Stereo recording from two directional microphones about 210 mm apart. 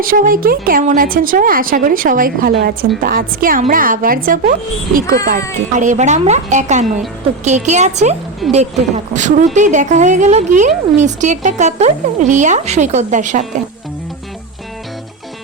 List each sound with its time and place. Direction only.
0.0 s a woman's voice: 40° right (ahead or behind)
8.4 s speech: centre (ahead or behind)
9.1 s a woman's voice: 35° right (ahead or behind)